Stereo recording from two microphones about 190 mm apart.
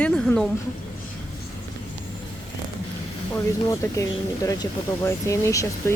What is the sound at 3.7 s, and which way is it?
Speech, 15° left (ahead or behind).